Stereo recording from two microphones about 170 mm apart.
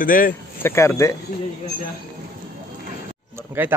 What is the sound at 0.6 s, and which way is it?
Speech, 15° left (ahead or behind).